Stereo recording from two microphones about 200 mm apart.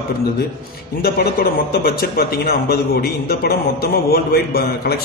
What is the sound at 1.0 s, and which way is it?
A man's voice, 50° left (ahead or behind).